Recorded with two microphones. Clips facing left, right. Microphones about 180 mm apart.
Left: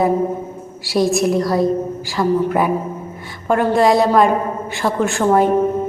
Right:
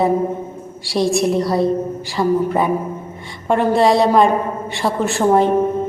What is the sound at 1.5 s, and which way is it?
Speech, 30° right (ahead or behind).